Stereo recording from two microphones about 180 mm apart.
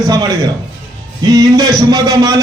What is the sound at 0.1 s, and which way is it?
A man's voice, 20° right (ahead or behind).